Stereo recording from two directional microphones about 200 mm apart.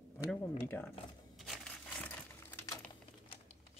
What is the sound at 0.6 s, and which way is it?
Speech, 10° left (ahead or behind).